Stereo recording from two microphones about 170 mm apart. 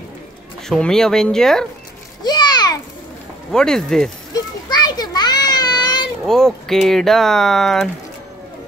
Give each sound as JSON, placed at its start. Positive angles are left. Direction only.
{"t": 0.7, "sound": "speech", "side_deg": 5}
{"t": 2.2, "sound": "a sound", "side_deg": 25}
{"t": 3.5, "sound": "speech", "side_deg": 5}
{"t": 4.3, "sound": "children playing", "side_deg": 25}
{"t": 6.2, "sound": "speech", "side_deg": 5}